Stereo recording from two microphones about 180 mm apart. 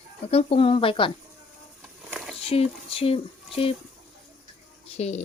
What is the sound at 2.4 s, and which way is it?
Speech, 35° left (ahead or behind).